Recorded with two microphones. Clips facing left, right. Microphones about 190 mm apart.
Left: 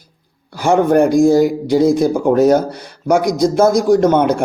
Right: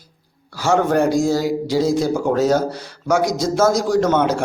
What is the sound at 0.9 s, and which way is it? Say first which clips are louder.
A man's voice: left 6 dB; 55° left (ahead or behind).